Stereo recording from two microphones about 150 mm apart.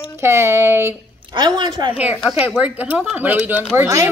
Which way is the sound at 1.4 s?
30° right (ahead or behind).